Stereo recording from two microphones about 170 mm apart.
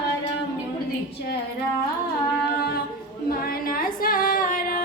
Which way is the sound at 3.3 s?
55° left (ahead or behind).